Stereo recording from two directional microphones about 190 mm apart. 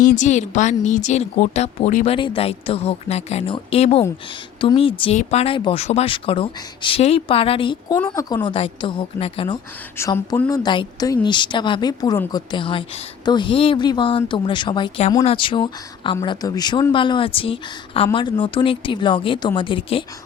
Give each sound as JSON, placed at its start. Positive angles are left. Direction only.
{"t": 0.0, "sound": "a woman's voice", "side_deg": 45}
{"t": 2.1, "sound": "a woman's voice", "side_deg": 25}
{"t": 7.9, "sound": "speech", "side_deg": 10}
{"t": 10.0, "sound": "speech", "side_deg": 15}